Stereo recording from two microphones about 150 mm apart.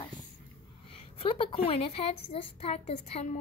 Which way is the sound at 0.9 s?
35° left (ahead or behind).